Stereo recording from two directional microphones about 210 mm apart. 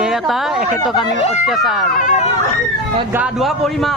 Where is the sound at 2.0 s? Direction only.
40° left (ahead or behind).